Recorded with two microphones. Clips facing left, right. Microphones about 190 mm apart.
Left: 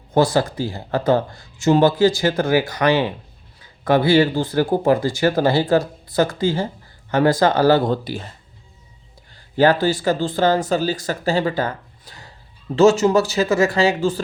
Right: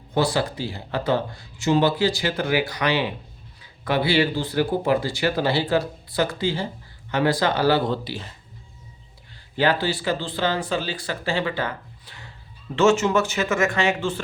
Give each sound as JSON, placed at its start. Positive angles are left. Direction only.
{"t": 0.1, "sound": "speech", "side_deg": 45}
{"t": 9.6, "sound": "speech", "side_deg": 45}